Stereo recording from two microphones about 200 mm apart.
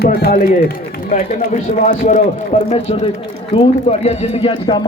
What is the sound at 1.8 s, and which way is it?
A man's voice, 35° left (ahead or behind).